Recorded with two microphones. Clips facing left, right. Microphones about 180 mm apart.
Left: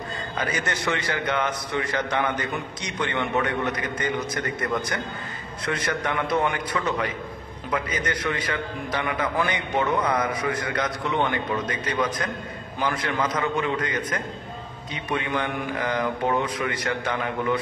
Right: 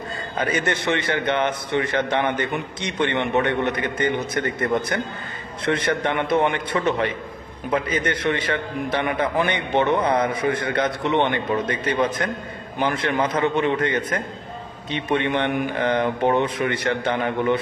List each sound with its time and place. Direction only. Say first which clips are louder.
0.4 s a man's voice: right 5 dB; 25° right (ahead or behind)